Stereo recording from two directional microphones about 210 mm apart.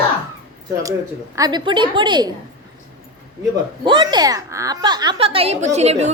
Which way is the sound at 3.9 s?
20° right (ahead or behind).